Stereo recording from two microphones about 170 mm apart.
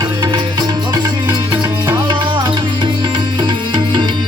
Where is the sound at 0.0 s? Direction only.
25° right (ahead or behind).